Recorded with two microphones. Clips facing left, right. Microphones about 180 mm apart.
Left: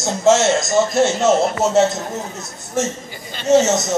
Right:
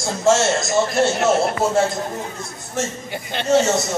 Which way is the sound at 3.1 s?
65° right (ahead or behind).